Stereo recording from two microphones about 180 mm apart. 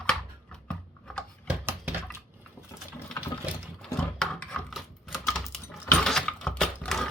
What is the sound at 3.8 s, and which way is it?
Typing, 5° left (ahead or behind).